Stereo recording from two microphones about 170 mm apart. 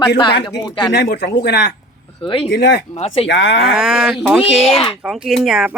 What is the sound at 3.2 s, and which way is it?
Speech, 90° left.